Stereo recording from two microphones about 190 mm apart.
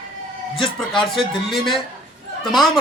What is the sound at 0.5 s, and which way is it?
Speech, 25° left (ahead or behind).